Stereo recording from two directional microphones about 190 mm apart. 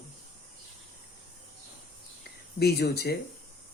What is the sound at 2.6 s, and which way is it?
Speech, 55° left (ahead or behind).